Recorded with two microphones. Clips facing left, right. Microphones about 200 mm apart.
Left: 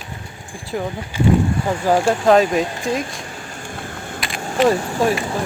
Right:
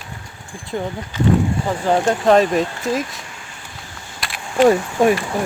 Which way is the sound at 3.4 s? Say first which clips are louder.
Left 7 dB; 50° left (ahead or behind).